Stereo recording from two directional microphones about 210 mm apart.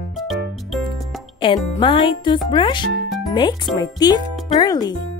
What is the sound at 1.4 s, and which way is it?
A woman's voice, 20° left (ahead or behind).